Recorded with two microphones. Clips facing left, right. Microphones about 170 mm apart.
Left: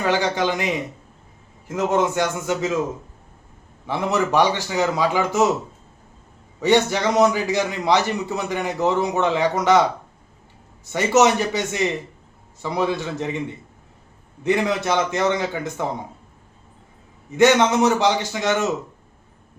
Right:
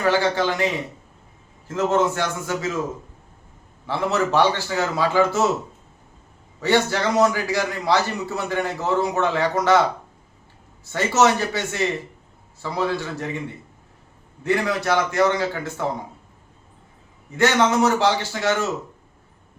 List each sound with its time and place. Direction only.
0.0 s a man's voice: 15° left (ahead or behind)
3.8 s a man's voice: 15° left (ahead or behind)
6.6 s a man's voice: 20° left (ahead or behind)
10.8 s a man's voice: 20° left (ahead or behind)
14.4 s a man's voice: 20° left (ahead or behind)
17.3 s a man's voice: 20° left (ahead or behind)